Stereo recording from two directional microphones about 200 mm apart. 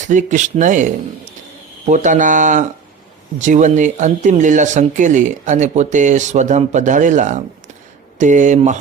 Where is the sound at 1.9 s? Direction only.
40° right (ahead or behind).